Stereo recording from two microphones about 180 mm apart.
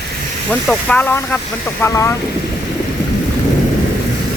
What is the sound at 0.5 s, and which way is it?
Speech, 10° left (ahead or behind).